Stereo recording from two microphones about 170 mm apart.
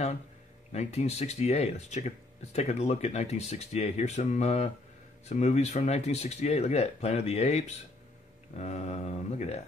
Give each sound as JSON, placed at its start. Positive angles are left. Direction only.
{"t": 0.7, "sound": "speech", "side_deg": 40}